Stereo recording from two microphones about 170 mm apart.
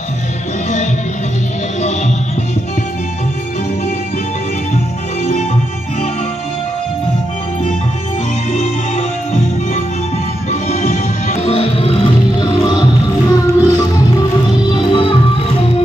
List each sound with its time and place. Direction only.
10.5 s music: 45° left (ahead or behind)